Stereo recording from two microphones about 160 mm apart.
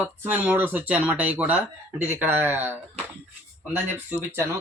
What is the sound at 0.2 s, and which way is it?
Speech, 10° right (ahead or behind).